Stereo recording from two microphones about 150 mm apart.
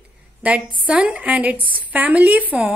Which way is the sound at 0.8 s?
10° right (ahead or behind).